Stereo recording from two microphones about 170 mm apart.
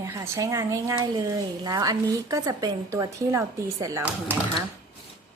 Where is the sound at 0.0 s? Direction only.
20° right (ahead or behind).